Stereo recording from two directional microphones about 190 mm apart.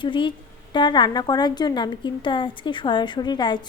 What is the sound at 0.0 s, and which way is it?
A woman's voice, 25° left (ahead or behind).